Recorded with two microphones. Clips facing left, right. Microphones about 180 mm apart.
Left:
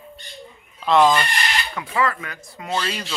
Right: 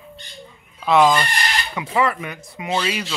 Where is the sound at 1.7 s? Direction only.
20° right (ahead or behind).